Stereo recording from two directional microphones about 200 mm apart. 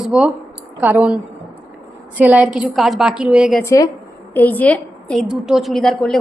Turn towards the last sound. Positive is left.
turn(degrees=0)  # may be behind; listen again after turning